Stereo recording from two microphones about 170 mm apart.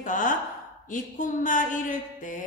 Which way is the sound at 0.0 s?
50° left (ahead or behind).